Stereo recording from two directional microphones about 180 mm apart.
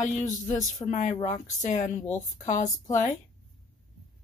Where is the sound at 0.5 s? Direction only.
40° left (ahead or behind).